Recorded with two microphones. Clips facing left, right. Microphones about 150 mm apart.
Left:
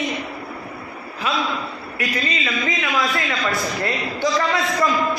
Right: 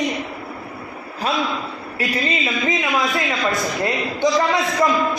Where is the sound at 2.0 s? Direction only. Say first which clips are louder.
Right 3 dB; 25° right (ahead or behind).